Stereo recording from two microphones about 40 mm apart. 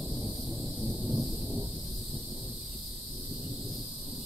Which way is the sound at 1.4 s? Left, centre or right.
Centre.